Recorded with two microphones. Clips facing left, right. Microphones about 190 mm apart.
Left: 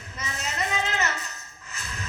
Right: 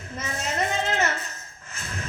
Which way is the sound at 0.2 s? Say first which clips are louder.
Right 4 dB; 50° right (ahead or behind).